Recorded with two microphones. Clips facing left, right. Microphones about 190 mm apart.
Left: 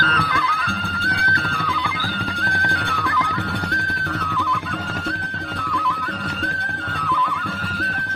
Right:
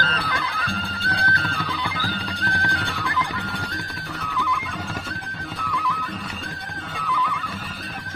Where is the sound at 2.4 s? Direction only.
55° left (ahead or behind).